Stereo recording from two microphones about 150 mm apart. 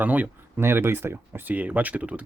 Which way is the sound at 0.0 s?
10° right (ahead or behind).